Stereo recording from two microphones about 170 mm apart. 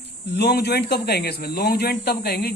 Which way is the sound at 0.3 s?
75° left (ahead or behind).